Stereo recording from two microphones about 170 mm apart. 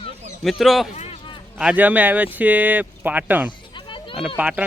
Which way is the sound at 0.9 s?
40° left (ahead or behind).